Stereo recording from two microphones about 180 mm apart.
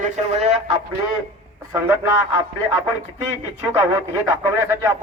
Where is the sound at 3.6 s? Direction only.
15° right (ahead or behind).